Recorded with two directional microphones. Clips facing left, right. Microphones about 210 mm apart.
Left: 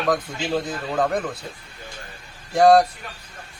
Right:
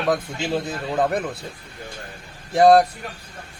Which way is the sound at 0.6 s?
20° right (ahead or behind).